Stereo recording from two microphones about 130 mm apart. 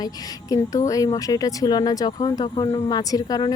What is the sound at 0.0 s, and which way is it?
A woman's voice, 30° left (ahead or behind).